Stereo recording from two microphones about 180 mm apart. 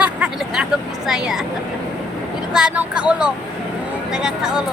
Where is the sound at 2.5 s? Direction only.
5° right (ahead or behind).